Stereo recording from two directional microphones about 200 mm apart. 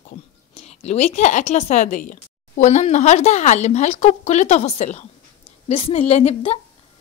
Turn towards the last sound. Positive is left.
turn(degrees=30)  # may be behind; listen again after turning